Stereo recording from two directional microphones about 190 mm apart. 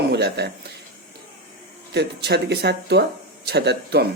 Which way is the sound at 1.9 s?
60° right (ahead or behind).